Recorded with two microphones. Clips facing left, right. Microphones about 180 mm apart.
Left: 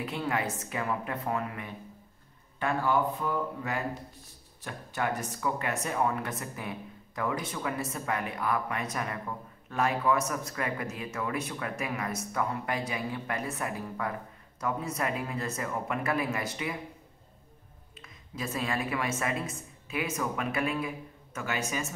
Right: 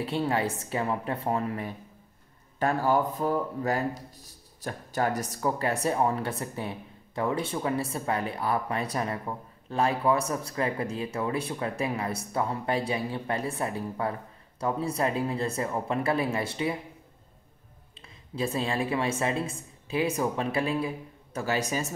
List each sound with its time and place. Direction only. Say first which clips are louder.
0.0 s speech: right 4 dB; 30° right (ahead or behind)
17.9 s a woman's voice: right 6 dB; 30° right (ahead or behind)